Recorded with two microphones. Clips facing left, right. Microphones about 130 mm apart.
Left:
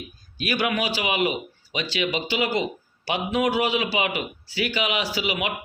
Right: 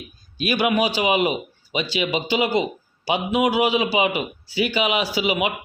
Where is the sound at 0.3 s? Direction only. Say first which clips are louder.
Right 5 dB; 20° right (ahead or behind).